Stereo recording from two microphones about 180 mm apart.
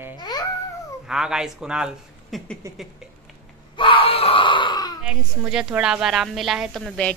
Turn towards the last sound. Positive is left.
turn(degrees=5)  # may be behind; listen again after turning